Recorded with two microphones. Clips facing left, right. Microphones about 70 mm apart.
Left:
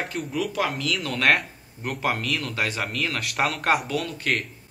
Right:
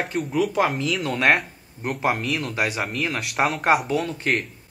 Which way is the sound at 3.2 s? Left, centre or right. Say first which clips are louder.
Right 3 dB; centre.